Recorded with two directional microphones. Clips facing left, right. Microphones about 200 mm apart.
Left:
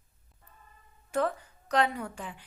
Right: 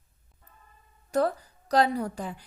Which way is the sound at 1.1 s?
40° right (ahead or behind).